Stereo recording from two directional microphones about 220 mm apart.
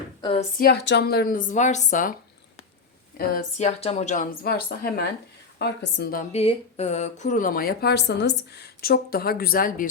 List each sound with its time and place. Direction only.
0.2 s speech: 20° left (ahead or behind)
0.6 s speech: 50° left (ahead or behind)
3.2 s a woman's voice: 35° left (ahead or behind)
6.3 s speech: 25° left (ahead or behind)